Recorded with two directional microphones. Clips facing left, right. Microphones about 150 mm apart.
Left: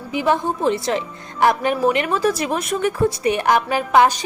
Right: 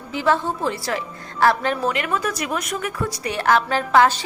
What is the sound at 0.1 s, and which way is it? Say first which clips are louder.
A woman's voice: left 1 dB; 15° left (ahead or behind).